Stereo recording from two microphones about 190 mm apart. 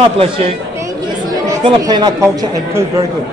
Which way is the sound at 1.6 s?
25° right (ahead or behind).